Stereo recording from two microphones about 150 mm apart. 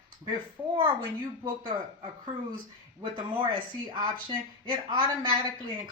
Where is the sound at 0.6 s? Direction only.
15° right (ahead or behind).